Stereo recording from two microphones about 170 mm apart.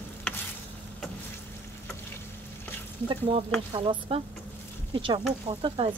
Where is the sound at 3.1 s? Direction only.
35° right (ahead or behind).